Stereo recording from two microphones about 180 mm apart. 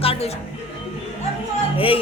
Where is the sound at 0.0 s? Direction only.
30° left (ahead or behind).